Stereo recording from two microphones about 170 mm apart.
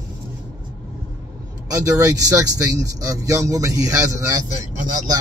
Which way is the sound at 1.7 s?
20° right (ahead or behind).